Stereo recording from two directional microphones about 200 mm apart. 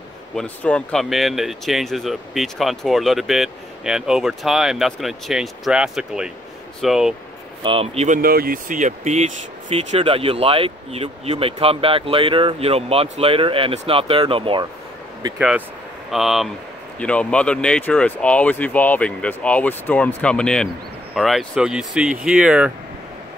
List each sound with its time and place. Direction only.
0.4 s speech: 5° left (ahead or behind)
7.6 s speech: 30° right (ahead or behind)
8.2 s speech: 50° right (ahead or behind); by 14.7 s 25° right (ahead or behind)
15.3 s speech: 5° right (ahead or behind)